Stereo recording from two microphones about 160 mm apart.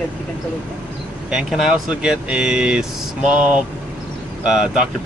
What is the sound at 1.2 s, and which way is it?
Speech, 5° right (ahead or behind).